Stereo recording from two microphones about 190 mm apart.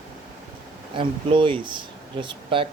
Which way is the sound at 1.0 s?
25° right (ahead or behind).